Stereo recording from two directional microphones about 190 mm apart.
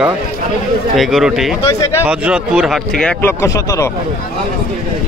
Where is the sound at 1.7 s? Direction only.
15° left (ahead or behind).